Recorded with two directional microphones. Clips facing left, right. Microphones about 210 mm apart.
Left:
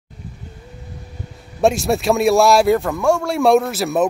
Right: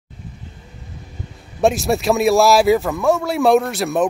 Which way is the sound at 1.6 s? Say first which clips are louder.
Even; centre (ahead or behind).